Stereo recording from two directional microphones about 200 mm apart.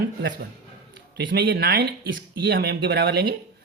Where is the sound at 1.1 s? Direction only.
60° right (ahead or behind).